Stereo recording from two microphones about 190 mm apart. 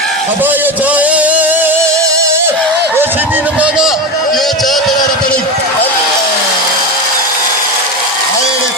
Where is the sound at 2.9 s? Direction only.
10° right (ahead or behind).